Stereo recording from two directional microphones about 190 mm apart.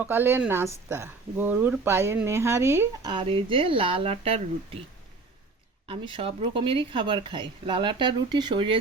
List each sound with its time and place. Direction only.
0.0 s speech: 10° right (ahead or behind)
3.1 s speech: 25° right (ahead or behind)
5.9 s speech: 25° right (ahead or behind)